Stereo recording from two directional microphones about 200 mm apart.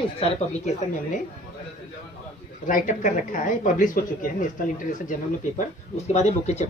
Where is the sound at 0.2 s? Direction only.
35° left (ahead or behind).